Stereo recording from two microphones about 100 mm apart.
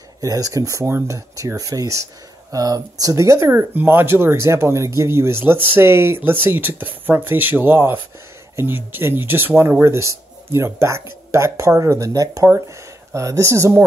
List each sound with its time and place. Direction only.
0.2 s speech: 35° right (ahead or behind)